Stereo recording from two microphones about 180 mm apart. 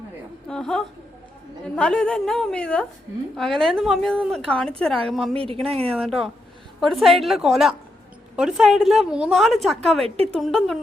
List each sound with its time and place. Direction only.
0.4 s a woman's voice: 5° left (ahead or behind)
5.3 s speech: 30° right (ahead or behind)
5.9 s a woman's voice: centre (ahead or behind)